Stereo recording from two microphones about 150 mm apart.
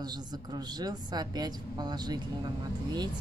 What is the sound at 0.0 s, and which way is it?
A woman's voice, 25° right (ahead or behind).